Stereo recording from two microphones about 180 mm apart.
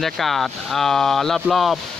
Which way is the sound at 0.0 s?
Centre (ahead or behind).